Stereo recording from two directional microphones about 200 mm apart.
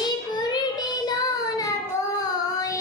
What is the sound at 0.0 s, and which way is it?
Child singing, 20° left (ahead or behind).